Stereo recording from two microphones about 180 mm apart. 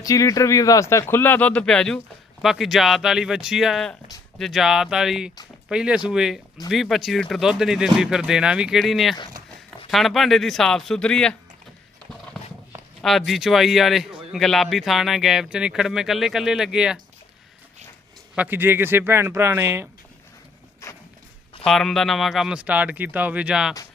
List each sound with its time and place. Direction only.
0.0 s a man's voice: 20° left (ahead or behind)
13.0 s a man's voice: centre (ahead or behind)
18.3 s speech: 10° right (ahead or behind)
20.8 s walk: 15° left (ahead or behind)
21.6 s a man's voice: centre (ahead or behind)